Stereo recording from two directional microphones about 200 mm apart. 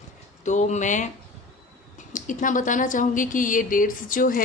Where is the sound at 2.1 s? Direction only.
40° left (ahead or behind).